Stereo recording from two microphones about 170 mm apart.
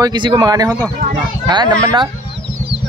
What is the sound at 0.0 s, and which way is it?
Speech, 25° right (ahead or behind).